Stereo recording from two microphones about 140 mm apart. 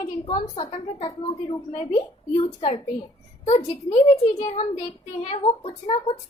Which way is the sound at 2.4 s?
45° left (ahead or behind).